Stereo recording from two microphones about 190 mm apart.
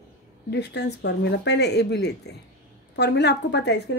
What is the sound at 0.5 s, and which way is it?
Speech, 65° left (ahead or behind).